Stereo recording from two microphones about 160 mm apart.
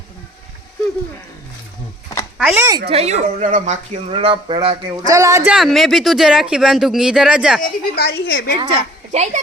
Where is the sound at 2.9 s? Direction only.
40° right (ahead or behind).